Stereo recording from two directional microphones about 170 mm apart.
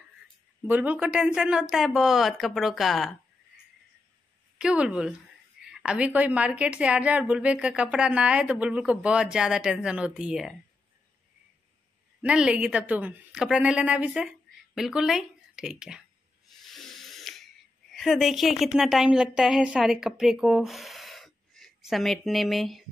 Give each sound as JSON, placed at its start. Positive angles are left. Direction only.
{"t": 0.7, "sound": "speech", "side_deg": -10}
{"t": 4.6, "sound": "a woman's voice", "side_deg": -5}
{"t": 12.2, "sound": "a woman's voice", "side_deg": -5}
{"t": 16.6, "sound": "ratchet", "side_deg": 0}
{"t": 17.9, "sound": "a woman's voice", "side_deg": 0}